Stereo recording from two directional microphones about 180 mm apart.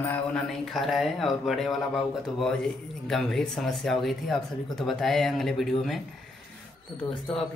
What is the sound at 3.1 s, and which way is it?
Speech, centre (ahead or behind).